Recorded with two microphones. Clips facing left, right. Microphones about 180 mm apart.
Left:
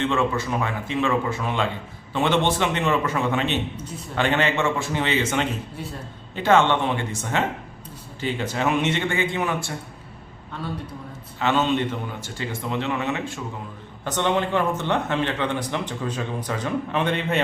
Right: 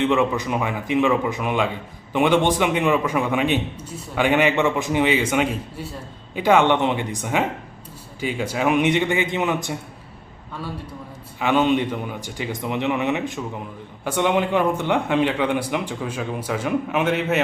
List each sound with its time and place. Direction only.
0.0 s a man's voice: 15° right (ahead or behind)
11.3 s a man's voice: 15° right (ahead or behind)